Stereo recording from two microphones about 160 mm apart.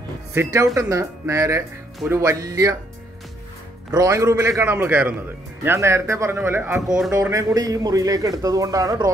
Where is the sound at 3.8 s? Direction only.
20° right (ahead or behind).